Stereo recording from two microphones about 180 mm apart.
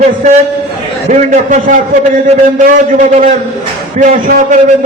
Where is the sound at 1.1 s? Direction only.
45° right (ahead or behind).